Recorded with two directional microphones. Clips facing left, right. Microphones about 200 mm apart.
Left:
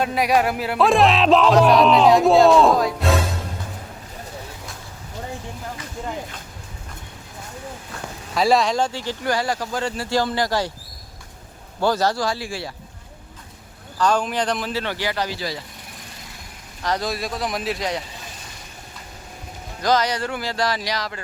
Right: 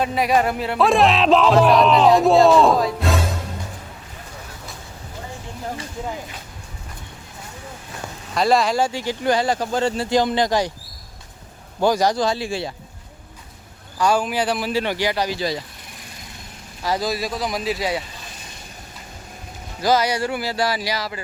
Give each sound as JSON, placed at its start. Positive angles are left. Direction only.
{"t": 0.0, "sound": "speech", "side_deg": 0}
{"t": 8.4, "sound": "speech", "side_deg": 0}
{"t": 11.8, "sound": "speech", "side_deg": -15}
{"t": 14.0, "sound": "speech", "side_deg": -10}
{"t": 16.8, "sound": "speech", "side_deg": -5}
{"t": 19.8, "sound": "speech", "side_deg": -10}